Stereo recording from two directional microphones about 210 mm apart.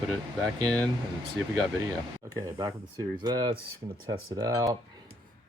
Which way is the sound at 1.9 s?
15° right (ahead or behind).